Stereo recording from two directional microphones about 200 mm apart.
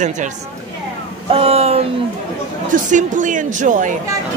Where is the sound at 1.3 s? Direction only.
30° right (ahead or behind).